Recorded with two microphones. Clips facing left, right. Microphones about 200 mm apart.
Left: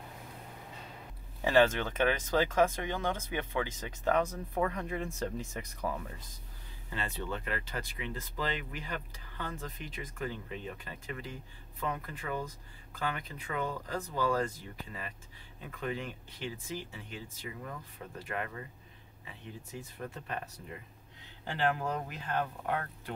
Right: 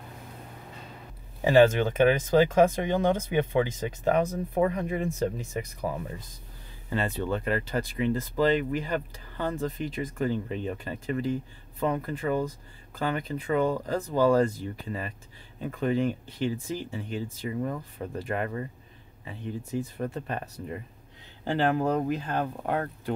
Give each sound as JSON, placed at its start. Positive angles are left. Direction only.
{"t": 1.4, "sound": "speech", "side_deg": -10}
{"t": 6.9, "sound": "speech", "side_deg": -45}
{"t": 20.0, "sound": "speech", "side_deg": -40}